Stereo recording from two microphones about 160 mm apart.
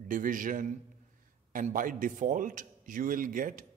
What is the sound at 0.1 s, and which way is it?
A man's voice, 60° right (ahead or behind).